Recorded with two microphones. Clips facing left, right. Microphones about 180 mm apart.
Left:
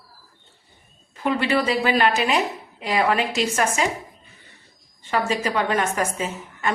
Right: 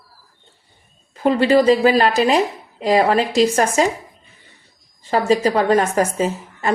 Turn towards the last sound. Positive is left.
turn(degrees=-35)  # may be behind; listen again after turning